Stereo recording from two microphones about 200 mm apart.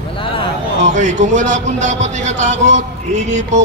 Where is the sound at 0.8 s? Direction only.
35° right (ahead or behind).